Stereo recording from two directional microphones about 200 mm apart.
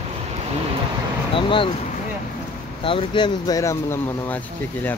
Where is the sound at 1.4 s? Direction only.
25° left (ahead or behind).